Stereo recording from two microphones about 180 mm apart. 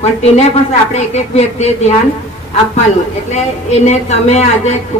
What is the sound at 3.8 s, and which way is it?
Speech, 40° left (ahead or behind).